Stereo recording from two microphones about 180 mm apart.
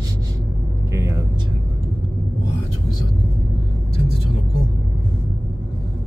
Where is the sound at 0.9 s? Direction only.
15° right (ahead or behind).